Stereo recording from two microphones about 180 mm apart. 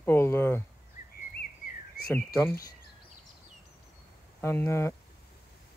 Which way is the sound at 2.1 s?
10° left (ahead or behind).